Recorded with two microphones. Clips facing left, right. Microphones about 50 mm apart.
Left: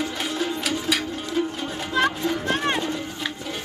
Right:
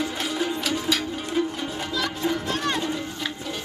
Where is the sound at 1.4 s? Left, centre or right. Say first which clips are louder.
Even; centre.